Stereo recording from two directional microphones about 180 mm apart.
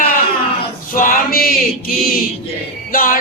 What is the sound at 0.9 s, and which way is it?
Music, 50° left (ahead or behind).